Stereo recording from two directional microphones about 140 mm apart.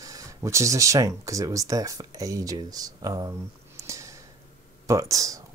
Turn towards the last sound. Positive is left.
turn(degrees=-25)  # may be behind; listen again after turning